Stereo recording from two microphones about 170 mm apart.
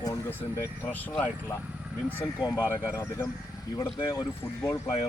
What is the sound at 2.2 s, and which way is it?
Speech, 15° left (ahead or behind).